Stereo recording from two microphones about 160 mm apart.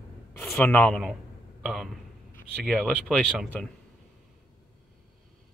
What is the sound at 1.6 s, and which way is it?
Speech, centre (ahead or behind).